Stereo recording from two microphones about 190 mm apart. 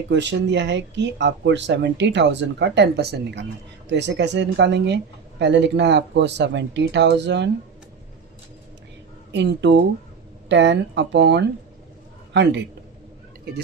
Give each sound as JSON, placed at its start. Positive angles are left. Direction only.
{"t": 0.1, "sound": "speech", "side_deg": -70}
{"t": 9.3, "sound": "speech", "side_deg": -65}